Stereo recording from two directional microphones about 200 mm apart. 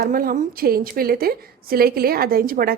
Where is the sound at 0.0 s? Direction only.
45° right (ahead or behind).